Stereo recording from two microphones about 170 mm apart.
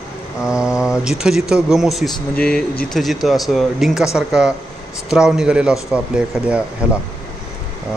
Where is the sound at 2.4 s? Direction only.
60° left (ahead or behind).